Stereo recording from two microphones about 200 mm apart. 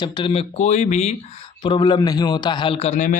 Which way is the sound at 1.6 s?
25° left (ahead or behind).